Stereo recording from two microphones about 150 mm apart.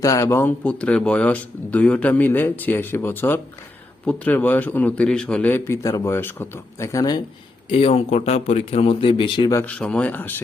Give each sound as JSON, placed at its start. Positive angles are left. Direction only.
{"t": 0.0, "sound": "speech", "side_deg": 20}
{"t": 7.7, "sound": "speech", "side_deg": 40}
{"t": 9.5, "sound": "speech", "side_deg": 10}